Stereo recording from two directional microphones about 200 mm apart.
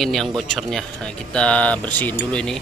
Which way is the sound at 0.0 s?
Centre (ahead or behind).